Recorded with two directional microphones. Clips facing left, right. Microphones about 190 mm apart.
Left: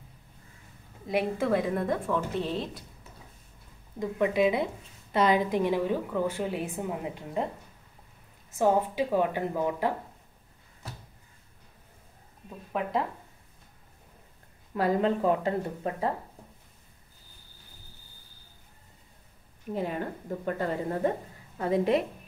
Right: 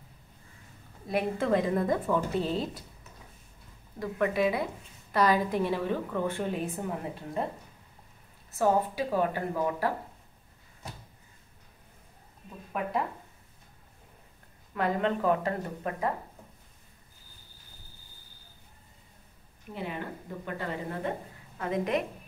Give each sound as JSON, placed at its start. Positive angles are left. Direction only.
{"t": 1.0, "sound": "a woman's voice", "side_deg": 10}
{"t": 4.0, "sound": "a woman's voice", "side_deg": 20}
{"t": 8.5, "sound": "a woman's voice", "side_deg": 15}
{"t": 14.7, "sound": "speech", "side_deg": 35}
{"t": 19.7, "sound": "a woman's voice", "side_deg": 40}